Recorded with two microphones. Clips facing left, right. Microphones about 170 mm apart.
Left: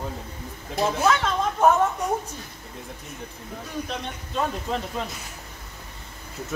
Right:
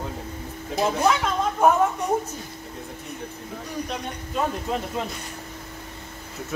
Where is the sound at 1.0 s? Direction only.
10° right (ahead or behind).